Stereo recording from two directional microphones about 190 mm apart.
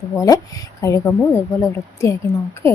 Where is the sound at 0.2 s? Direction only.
15° left (ahead or behind).